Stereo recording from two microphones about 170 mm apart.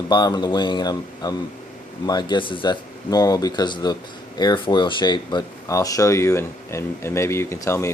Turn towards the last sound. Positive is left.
turn(degrees=15)  # may be behind; listen again after turning